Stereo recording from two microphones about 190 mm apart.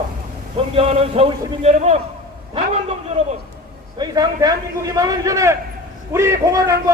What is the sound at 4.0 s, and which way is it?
A man's voice, 20° right (ahead or behind).